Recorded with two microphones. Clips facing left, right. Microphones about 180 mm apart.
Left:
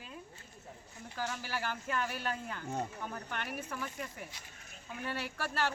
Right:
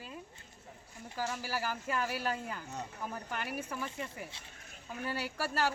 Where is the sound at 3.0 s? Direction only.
5° right (ahead or behind).